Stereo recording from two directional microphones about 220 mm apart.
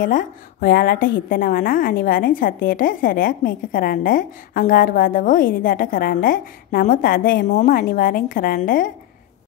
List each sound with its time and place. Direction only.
0.0 s a woman's voice: 40° left (ahead or behind)